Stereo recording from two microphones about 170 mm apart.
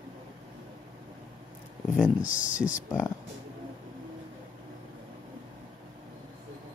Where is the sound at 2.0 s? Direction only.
10° right (ahead or behind).